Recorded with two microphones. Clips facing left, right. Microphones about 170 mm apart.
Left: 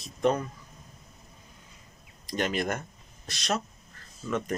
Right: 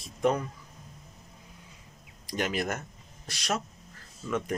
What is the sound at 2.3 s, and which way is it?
Speech, 5° right (ahead or behind).